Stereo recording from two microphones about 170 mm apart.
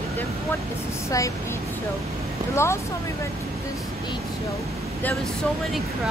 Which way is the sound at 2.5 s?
15° left (ahead or behind).